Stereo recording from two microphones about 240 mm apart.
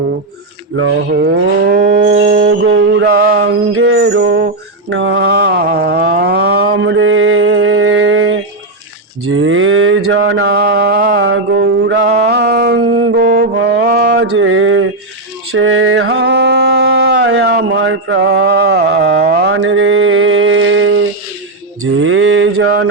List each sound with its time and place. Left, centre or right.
0.8 s cattle: right
1.8 s a sound: right
2.5 s cattle: right
3.7 s mantra: right
9.2 s cattle: right
10.1 s a sound: right
11.5 s mantra: right
13.0 s music: right
13.2 s mantra: right
15.5 s music: right
21.8 s a sound: right